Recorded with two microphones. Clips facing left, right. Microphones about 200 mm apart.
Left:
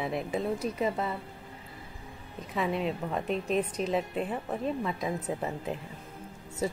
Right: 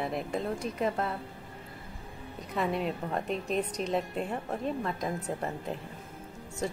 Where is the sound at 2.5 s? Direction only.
Centre (ahead or behind).